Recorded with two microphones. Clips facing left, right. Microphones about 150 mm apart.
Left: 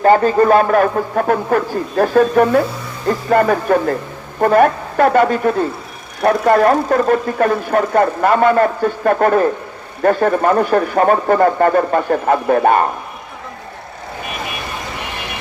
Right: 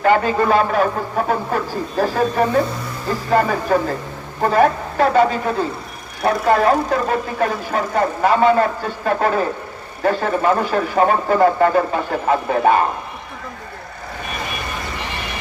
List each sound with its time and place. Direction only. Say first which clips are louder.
0.0 s speech: left 5 dB; 40° left (ahead or behind)